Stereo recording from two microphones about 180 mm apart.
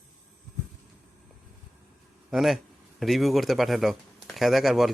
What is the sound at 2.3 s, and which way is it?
Speech, centre (ahead or behind).